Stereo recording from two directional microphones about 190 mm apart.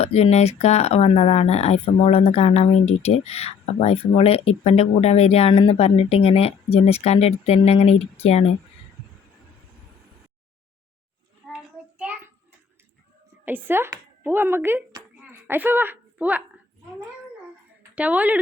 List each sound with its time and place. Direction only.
0.0 s speech: 35° left (ahead or behind)
11.5 s child singing: 5° right (ahead or behind)
13.4 s speech: 10° right (ahead or behind)
17.9 s speech: 5° right (ahead or behind)